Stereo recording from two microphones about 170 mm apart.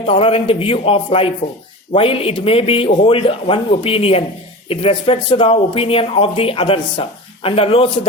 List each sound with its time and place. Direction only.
0.0 s speech: 35° left (ahead or behind)